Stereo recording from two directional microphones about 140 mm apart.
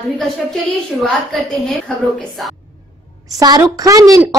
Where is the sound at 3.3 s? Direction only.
25° right (ahead or behind).